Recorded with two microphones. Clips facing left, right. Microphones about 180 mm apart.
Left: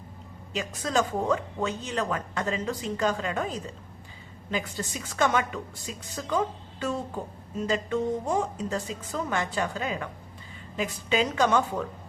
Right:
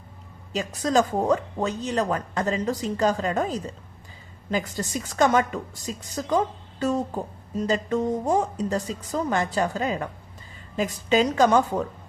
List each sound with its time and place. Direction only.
0.5 s a woman's voice: 40° right (ahead or behind)